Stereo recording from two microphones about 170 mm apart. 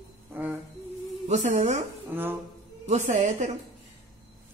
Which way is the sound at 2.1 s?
10° right (ahead or behind).